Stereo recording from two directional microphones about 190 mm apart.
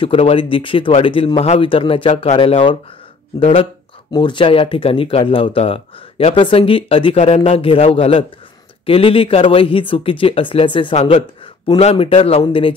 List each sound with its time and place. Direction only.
0.0 s speech: 30° left (ahead or behind)